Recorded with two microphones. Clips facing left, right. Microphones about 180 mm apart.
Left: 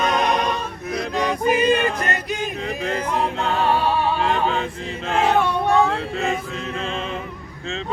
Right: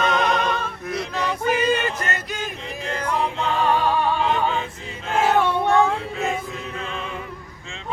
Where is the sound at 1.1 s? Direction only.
15° left (ahead or behind).